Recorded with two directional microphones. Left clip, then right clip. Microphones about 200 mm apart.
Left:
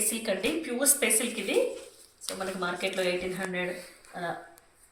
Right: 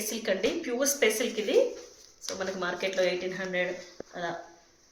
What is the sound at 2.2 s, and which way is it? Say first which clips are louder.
A woman's voice: even; 50° right (ahead or behind).